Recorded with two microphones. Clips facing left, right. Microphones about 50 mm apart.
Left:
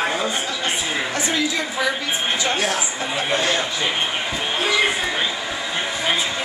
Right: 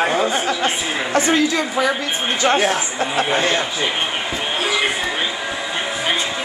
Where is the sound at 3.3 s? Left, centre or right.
Right.